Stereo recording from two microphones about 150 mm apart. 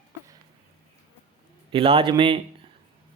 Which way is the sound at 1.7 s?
35° right (ahead or behind).